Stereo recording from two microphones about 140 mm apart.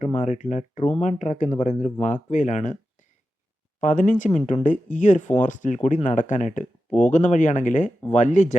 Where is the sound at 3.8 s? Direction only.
65° left (ahead or behind).